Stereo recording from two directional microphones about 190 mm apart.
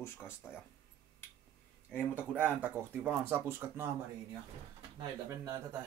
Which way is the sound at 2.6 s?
10° right (ahead or behind).